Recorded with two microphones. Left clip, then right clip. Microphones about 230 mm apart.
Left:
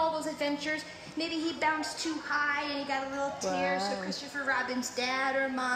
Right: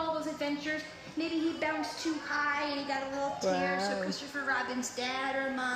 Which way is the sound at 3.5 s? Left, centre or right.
Centre.